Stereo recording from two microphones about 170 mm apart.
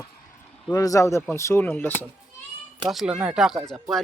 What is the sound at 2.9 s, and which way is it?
Speech, 5° right (ahead or behind).